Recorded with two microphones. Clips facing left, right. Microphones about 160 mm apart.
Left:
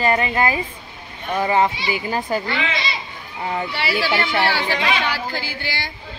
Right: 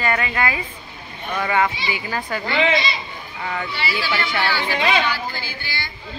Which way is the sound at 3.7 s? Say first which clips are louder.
Left 3 dB; 70° left (ahead or behind).